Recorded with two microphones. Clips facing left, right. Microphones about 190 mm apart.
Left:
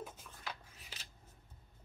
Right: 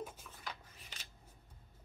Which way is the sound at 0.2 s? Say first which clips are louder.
Left 1 dB; 5° left (ahead or behind).